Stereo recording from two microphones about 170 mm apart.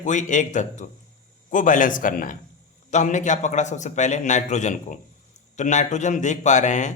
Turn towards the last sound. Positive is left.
turn(degrees=45)  # may be behind; listen again after turning